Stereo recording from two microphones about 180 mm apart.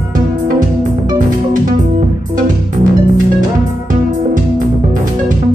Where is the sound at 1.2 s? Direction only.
45° right (ahead or behind).